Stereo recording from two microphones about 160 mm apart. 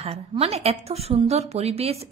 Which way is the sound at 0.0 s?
40° right (ahead or behind).